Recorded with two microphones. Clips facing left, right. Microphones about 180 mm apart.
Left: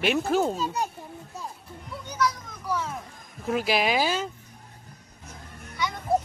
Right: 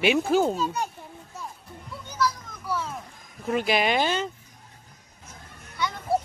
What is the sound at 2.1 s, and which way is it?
Children playing, centre (ahead or behind).